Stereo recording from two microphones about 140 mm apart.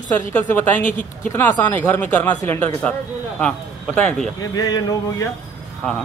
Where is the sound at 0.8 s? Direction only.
65° left (ahead or behind).